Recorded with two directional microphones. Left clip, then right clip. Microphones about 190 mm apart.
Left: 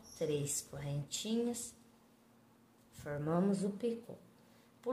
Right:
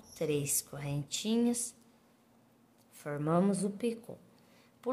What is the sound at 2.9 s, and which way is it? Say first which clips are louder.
A woman's voice: right 5 dB; 35° right (ahead or behind).